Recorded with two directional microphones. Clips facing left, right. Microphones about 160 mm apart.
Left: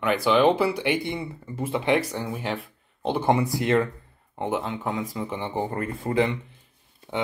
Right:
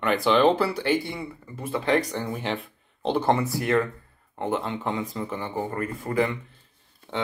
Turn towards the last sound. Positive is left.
turn(degrees=25)  # may be behind; listen again after turning